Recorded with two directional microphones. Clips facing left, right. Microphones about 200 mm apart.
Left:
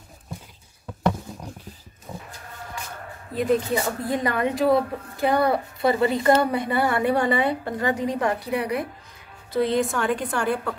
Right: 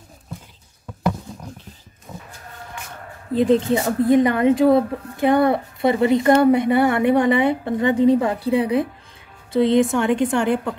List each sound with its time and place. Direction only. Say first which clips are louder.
2.1 s goat: even; 15° left (ahead or behind)
3.3 s speech: right 5 dB; 25° right (ahead or behind)